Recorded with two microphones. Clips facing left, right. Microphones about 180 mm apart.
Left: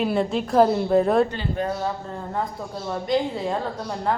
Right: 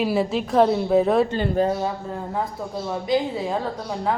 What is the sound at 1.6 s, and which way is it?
Speech, 35° right (ahead or behind).